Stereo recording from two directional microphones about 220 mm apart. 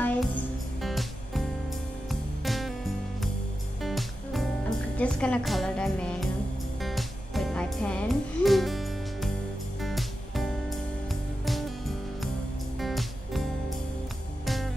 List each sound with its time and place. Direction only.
0.0 s music: 5° left (ahead or behind)